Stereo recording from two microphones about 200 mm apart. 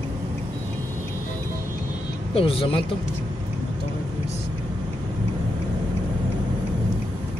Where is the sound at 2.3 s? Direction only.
25° left (ahead or behind).